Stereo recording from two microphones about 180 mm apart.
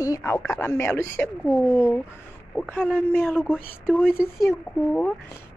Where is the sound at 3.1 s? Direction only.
10° left (ahead or behind).